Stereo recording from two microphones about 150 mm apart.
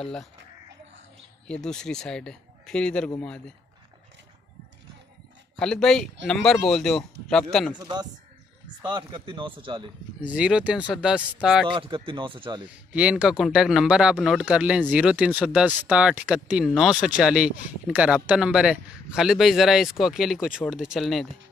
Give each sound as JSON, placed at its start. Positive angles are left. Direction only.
{"t": 0.0, "sound": "speech", "side_deg": 5}
{"t": 1.5, "sound": "speech", "side_deg": 5}
{"t": 5.6, "sound": "speech", "side_deg": 5}
{"t": 7.8, "sound": "a man's voice", "side_deg": -25}
{"t": 10.2, "sound": "speech", "side_deg": -5}
{"t": 11.7, "sound": "speech", "side_deg": -35}
{"t": 12.7, "sound": "speech", "side_deg": -5}